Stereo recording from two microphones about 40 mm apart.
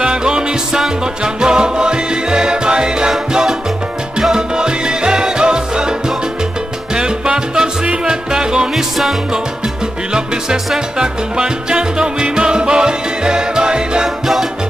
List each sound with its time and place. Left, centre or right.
0.0 s music: right
8.7 s music: centre
10.1 s music: centre
14.2 s music: centre